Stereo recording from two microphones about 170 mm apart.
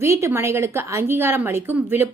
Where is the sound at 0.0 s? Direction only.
15° right (ahead or behind).